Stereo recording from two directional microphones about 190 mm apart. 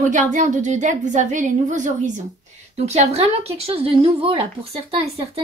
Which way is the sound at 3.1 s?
30° right (ahead or behind).